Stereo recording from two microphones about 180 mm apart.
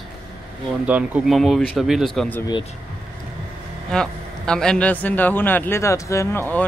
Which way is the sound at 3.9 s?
5° left (ahead or behind).